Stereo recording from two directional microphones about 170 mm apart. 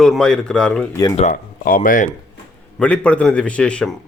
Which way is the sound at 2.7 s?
10° left (ahead or behind).